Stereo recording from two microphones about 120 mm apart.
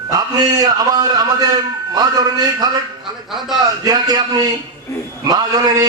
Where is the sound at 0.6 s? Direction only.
30° right (ahead or behind).